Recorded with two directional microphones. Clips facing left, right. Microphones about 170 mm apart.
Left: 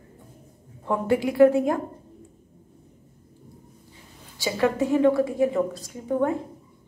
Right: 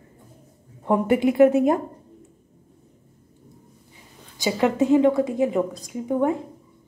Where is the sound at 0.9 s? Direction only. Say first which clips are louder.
Right 4 dB; 20° right (ahead or behind).